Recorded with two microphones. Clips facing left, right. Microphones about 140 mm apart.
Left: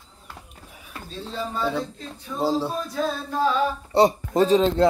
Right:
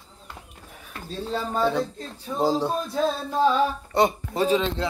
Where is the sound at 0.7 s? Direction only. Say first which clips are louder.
Even; 5° left (ahead or behind).